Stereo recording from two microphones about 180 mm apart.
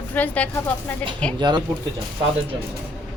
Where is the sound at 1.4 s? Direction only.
25° right (ahead or behind).